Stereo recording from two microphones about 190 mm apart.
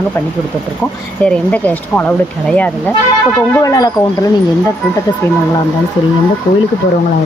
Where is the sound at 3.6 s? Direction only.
20° left (ahead or behind).